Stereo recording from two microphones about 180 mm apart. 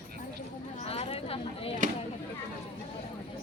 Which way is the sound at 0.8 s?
35° left (ahead or behind).